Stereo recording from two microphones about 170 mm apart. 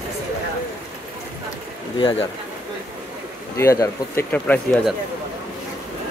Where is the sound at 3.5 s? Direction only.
15° left (ahead or behind).